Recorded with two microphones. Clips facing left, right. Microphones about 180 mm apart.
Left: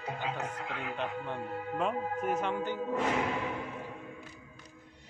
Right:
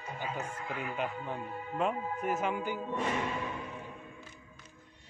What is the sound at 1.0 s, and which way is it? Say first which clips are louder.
Speech: left 2 dB; 5° right (ahead or behind).